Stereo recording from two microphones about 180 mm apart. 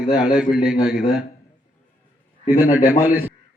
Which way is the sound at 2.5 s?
50° left (ahead or behind).